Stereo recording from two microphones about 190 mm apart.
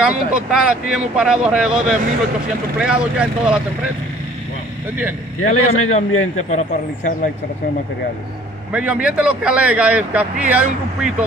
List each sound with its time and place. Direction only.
0.0 s speech: 5° right (ahead or behind)
5.4 s speech: 35° left (ahead or behind)
8.7 s speech: 5° right (ahead or behind)